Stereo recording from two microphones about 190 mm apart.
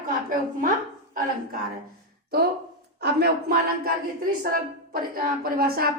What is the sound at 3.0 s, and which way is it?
A woman's voice, 60° right (ahead or behind).